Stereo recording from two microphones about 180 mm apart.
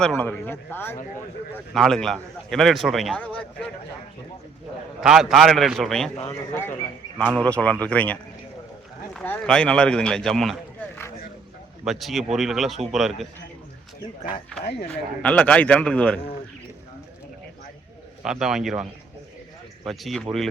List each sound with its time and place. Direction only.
0.0 s speech: 5° left (ahead or behind)
1.5 s a man's voice: centre (ahead or behind)
4.9 s a man's voice: 5° right (ahead or behind)
6.5 s a man's voice: 10° left (ahead or behind)
11.9 s a man's voice: centre (ahead or behind)
14.6 s speech: 65° left (ahead or behind)
14.8 s speech: 5° left (ahead or behind)
18.2 s a man's voice: 5° right (ahead or behind)